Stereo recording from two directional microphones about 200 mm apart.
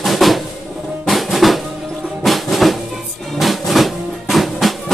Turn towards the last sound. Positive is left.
turn(degrees=0)  # may be behind; listen again after turning